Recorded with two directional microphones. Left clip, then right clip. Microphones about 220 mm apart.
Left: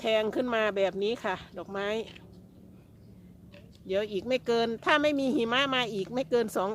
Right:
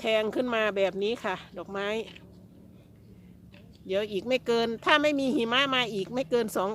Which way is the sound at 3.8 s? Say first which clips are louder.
Right 1 dB; 5° right (ahead or behind).